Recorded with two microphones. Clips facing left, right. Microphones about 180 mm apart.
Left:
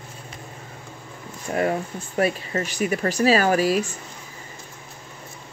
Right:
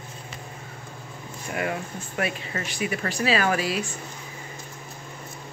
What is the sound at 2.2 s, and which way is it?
Speech, 35° left (ahead or behind).